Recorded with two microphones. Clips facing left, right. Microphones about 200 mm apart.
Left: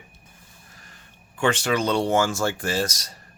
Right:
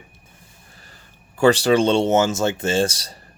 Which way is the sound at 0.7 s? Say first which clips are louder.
Right 2 dB; 30° right (ahead or behind).